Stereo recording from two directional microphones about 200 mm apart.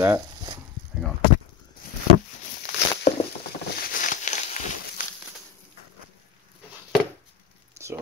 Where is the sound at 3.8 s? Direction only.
40° left (ahead or behind).